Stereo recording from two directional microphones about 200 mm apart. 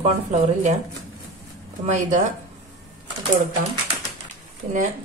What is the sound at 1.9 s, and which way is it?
Speech, 35° right (ahead or behind).